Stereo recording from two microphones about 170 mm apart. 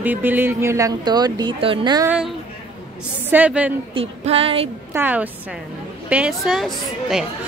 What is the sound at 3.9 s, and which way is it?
Female singing, 35° right (ahead or behind).